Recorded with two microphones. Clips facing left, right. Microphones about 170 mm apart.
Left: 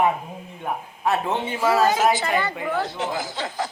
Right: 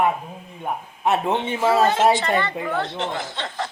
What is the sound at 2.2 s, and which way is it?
A man's voice, 5° left (ahead or behind).